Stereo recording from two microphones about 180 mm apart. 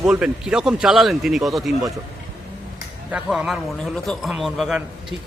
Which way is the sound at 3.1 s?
5° right (ahead or behind).